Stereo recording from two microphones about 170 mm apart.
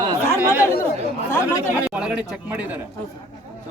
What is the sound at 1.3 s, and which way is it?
Speech, 15° left (ahead or behind).